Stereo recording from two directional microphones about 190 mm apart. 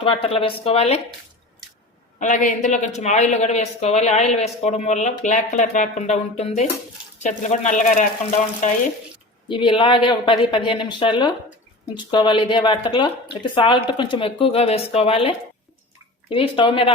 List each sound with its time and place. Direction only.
0.0 s a woman's voice: 30° left (ahead or behind)
2.1 s a woman's voice: 40° left (ahead or behind)
9.5 s a woman's voice: 25° left (ahead or behind)